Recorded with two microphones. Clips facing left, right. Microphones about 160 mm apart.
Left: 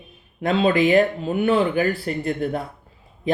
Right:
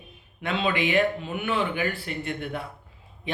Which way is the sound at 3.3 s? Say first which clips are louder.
Left 9 dB; 40° left (ahead or behind).